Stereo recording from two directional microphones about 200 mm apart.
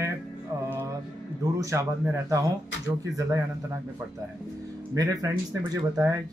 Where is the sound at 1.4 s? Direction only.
15° right (ahead or behind).